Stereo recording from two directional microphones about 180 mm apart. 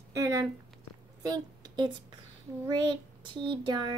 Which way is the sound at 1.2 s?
20° right (ahead or behind).